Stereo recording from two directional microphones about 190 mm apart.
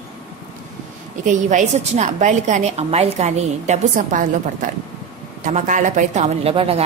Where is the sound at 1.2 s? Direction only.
40° right (ahead or behind).